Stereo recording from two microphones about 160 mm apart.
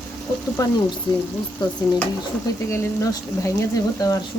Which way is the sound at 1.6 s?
25° left (ahead or behind).